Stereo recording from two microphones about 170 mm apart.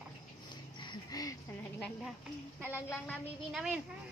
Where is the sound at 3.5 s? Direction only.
5° right (ahead or behind).